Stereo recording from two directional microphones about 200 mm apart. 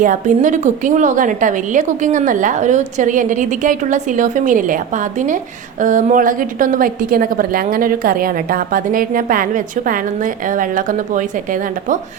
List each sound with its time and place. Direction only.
0.0 s a woman's voice: 40° right (ahead or behind)